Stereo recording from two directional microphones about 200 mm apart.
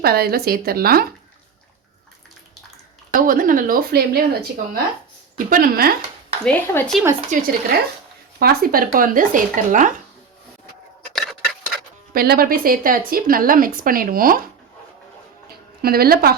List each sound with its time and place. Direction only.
0.0 s speech: 50° right (ahead or behind)
3.1 s speech: 45° right (ahead or behind)
6.4 s speech: 5° left (ahead or behind)
7.3 s speech: 40° right (ahead or behind)
8.4 s speech: 50° right (ahead or behind)
11.1 s clock: centre (ahead or behind)
12.1 s speech: 50° right (ahead or behind)
15.8 s speech: 50° right (ahead or behind)